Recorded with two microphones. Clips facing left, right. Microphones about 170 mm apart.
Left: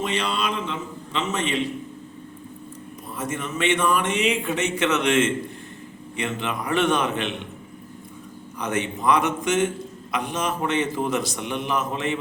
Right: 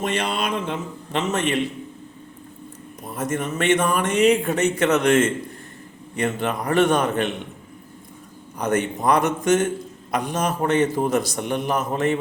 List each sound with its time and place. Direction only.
0.0 s a man's voice: 50° right (ahead or behind)
3.2 s a man's voice: 45° right (ahead or behind)
8.5 s a man's voice: 40° right (ahead or behind)